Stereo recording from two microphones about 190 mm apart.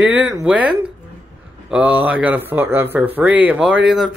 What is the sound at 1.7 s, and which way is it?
A man's voice, 10° right (ahead or behind).